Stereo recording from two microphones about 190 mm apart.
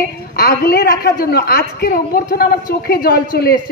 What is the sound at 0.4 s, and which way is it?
A man's voice, 55° left (ahead or behind).